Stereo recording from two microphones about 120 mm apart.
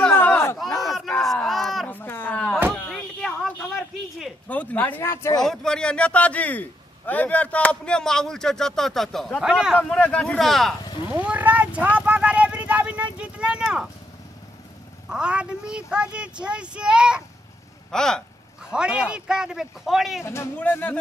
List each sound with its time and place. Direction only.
0.1 s a sound: 15° left (ahead or behind)
0.7 s battle cry: centre (ahead or behind)
1.9 s a sound: 15° left (ahead or behind)
4.5 s speech: 10° left (ahead or behind)
5.4 s a man's voice: 5° left (ahead or behind)
9.8 s speech: 10° left (ahead or behind)
10.8 s a sound: 35° left (ahead or behind)
11.1 s a sound: 10° right (ahead or behind)
12.0 s vehicle: 10° right (ahead or behind)
15.0 s speech: 5° right (ahead or behind)
17.9 s a man's voice: 5° left (ahead or behind)
18.7 s a man's voice: 5° right (ahead or behind)
20.2 s speech: 20° left (ahead or behind)